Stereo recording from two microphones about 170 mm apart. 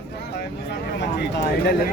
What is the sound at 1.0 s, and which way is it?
Speech, 80° left.